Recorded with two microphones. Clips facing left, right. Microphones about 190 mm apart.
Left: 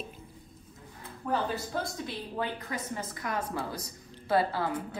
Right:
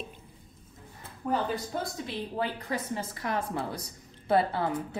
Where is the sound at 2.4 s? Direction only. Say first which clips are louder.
Right 2 dB; 30° right (ahead or behind).